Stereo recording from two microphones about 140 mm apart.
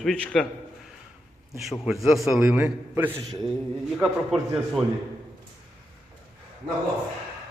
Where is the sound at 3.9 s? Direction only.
Centre (ahead or behind).